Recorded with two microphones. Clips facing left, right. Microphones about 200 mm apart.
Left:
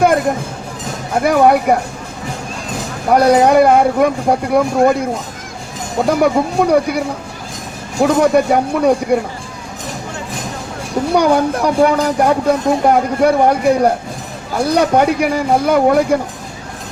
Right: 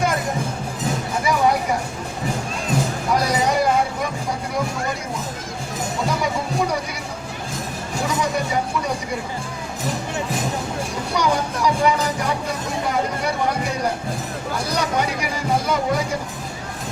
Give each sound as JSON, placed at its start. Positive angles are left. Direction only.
{"t": 1.1, "sound": "speech", "side_deg": 60}
{"t": 3.1, "sound": "speech", "side_deg": 60}
{"t": 6.2, "sound": "speech", "side_deg": 60}
{"t": 8.0, "sound": "speech", "side_deg": 60}
{"t": 11.1, "sound": "speech", "side_deg": 55}